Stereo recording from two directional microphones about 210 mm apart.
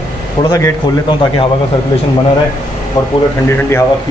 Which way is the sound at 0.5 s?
20° left (ahead or behind).